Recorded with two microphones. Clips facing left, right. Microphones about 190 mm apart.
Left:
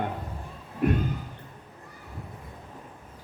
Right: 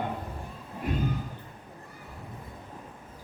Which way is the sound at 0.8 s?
65° left (ahead or behind).